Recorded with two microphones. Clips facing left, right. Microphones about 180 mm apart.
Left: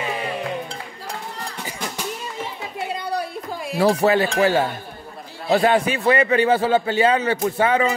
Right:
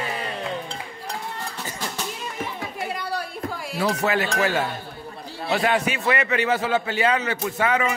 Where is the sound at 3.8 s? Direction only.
35° left (ahead or behind).